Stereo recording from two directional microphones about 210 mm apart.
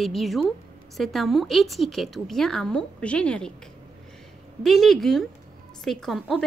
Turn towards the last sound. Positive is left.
turn(degrees=0)  # may be behind; listen again after turning